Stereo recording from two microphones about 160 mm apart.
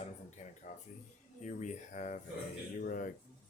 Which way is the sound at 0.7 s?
50° left (ahead or behind).